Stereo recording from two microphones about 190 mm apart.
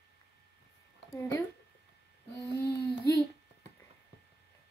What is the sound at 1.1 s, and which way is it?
Speech, 15° left (ahead or behind).